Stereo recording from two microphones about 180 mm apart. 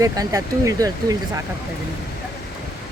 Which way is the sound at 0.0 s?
20° right (ahead or behind).